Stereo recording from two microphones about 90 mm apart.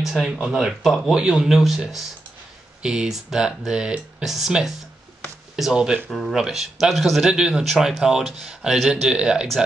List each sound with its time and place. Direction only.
0.0 s speech: 5° right (ahead or behind)
6.0 s speech: 5° left (ahead or behind)